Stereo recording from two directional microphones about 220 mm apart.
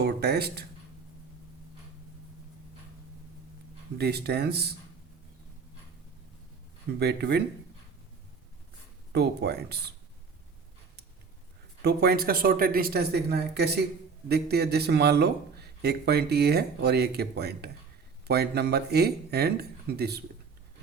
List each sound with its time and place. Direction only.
0.0 s a man's voice: 45° right (ahead or behind)
3.9 s a man's voice: 45° right (ahead or behind)
7.0 s a man's voice: 45° right (ahead or behind)
9.1 s a man's voice: 45° right (ahead or behind)
11.8 s a man's voice: 45° right (ahead or behind)